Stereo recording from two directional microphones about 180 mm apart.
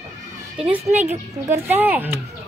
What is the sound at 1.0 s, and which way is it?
Cutlery, 10° right (ahead or behind).